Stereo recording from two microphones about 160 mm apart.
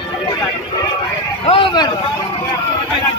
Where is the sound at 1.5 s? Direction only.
30° left (ahead or behind).